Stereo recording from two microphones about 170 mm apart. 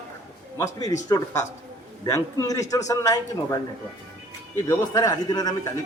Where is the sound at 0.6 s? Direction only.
20° left (ahead or behind).